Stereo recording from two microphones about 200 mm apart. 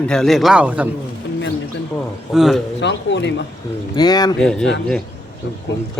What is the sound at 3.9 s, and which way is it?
Speech, 20° left (ahead or behind).